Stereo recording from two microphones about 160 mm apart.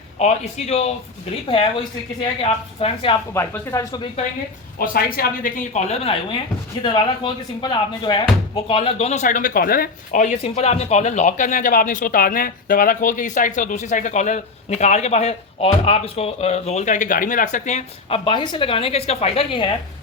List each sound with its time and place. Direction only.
0.2 s speech: 45° left (ahead or behind)
3.3 s speech: 15° left (ahead or behind)
4.8 s speech: 65° left (ahead or behind); by 18.2 s 45° left (ahead or behind)
18.3 s speech: 30° left (ahead or behind)